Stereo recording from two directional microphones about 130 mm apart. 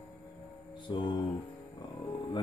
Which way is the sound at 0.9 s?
40° left (ahead or behind).